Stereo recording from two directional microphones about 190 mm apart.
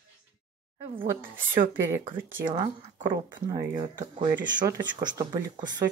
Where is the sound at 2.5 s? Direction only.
25° right (ahead or behind).